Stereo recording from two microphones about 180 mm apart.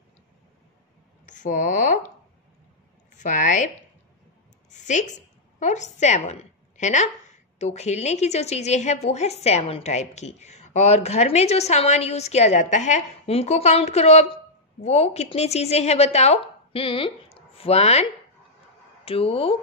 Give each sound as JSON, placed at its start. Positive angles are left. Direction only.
{"t": 1.2, "sound": "speech", "side_deg": 45}
{"t": 3.2, "sound": "a woman's voice", "side_deg": 45}
{"t": 19.0, "sound": "a woman's voice", "side_deg": 30}